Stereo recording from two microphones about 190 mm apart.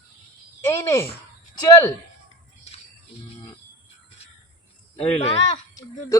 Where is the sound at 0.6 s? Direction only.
15° left (ahead or behind).